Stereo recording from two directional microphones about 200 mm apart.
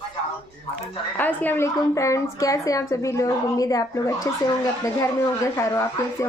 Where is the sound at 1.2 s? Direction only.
10° left (ahead or behind).